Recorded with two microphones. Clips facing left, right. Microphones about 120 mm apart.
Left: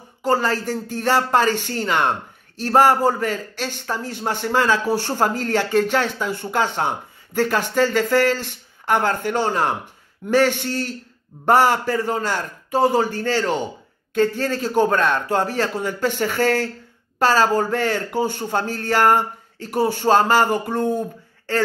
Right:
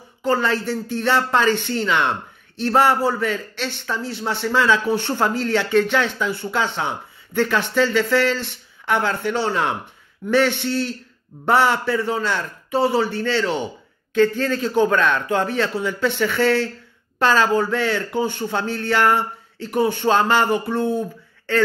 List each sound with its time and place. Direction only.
0.3 s speech: 40° left (ahead or behind)